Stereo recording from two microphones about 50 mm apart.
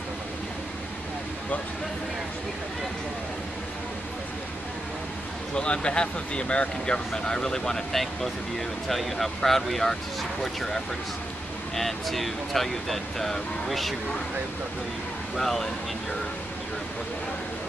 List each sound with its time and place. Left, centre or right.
5.5 s speech: left; by 13.9 s centre
15.3 s speech: centre